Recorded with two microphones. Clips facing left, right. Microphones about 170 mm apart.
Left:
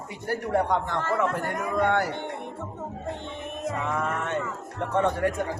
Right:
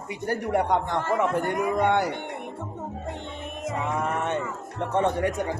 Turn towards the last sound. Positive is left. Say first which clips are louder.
# even
turn(degrees=-20)  # may be behind; listen again after turning